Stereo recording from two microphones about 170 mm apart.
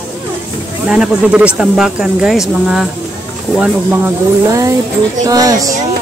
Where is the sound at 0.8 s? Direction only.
5° right (ahead or behind).